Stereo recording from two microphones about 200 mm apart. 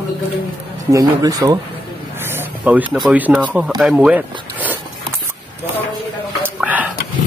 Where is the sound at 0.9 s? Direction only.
20° right (ahead or behind).